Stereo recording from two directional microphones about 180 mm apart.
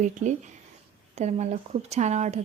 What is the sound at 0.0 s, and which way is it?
A woman's voice, 45° right (ahead or behind).